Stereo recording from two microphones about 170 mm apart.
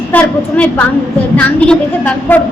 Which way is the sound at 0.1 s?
10° left (ahead or behind).